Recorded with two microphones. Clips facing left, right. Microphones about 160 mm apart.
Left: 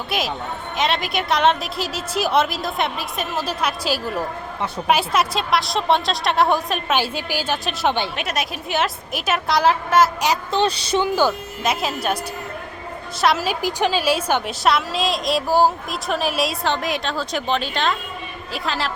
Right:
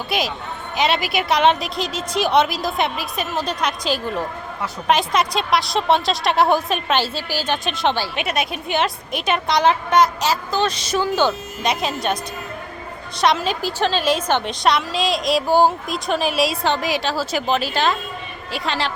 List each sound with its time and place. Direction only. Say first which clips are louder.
0.1 s a woman's voice: even; centre (ahead or behind)
10.5 s speech: left 1 dB; 30° left (ahead or behind)
11.0 s a woman's voice: right 1 dB; 10° left (ahead or behind)
13.2 s a woman's voice: right 1 dB; 5° left (ahead or behind)